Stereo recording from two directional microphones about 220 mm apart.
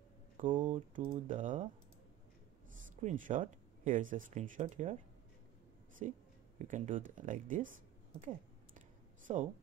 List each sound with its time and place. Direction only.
0.4 s a sound: 35° right (ahead or behind)
0.9 s speech: 35° right (ahead or behind)
3.0 s speech: 35° right (ahead or behind)
6.0 s speech: 30° right (ahead or behind)
9.3 s speech: 30° right (ahead or behind)